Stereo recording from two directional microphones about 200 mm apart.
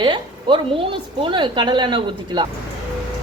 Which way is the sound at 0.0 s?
25° right (ahead or behind).